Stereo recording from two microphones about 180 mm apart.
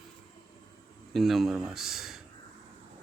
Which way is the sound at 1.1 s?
Centre (ahead or behind).